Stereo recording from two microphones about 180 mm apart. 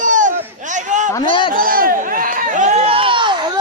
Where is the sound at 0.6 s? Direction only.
45° right (ahead or behind).